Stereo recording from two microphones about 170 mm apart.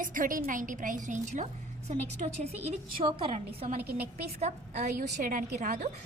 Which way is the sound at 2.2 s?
35° right (ahead or behind).